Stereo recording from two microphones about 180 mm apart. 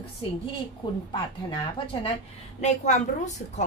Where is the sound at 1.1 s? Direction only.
25° left (ahead or behind).